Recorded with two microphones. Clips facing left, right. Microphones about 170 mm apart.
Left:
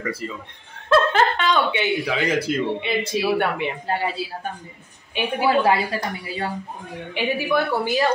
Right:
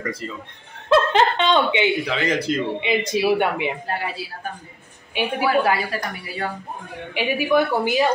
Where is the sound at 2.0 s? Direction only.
10° left (ahead or behind).